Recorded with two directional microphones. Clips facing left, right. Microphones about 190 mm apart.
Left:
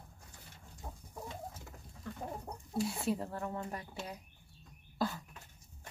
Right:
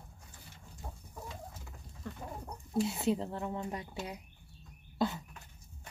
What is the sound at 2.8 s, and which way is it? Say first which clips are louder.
Speech: right 3 dB; 20° right (ahead or behind).